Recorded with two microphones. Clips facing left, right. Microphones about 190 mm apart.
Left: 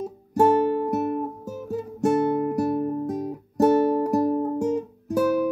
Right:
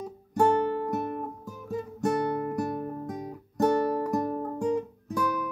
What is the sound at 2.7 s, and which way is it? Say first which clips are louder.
Music: left 8 dB; 25° left (ahead or behind).